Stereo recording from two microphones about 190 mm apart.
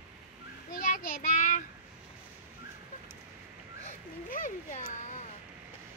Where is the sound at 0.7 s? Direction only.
45° left (ahead or behind).